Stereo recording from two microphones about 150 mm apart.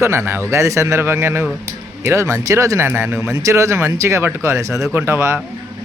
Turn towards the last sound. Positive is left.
turn(degrees=-15)  # may be behind; listen again after turning